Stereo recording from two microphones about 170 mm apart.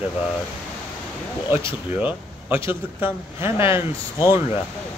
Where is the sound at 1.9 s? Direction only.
10° right (ahead or behind).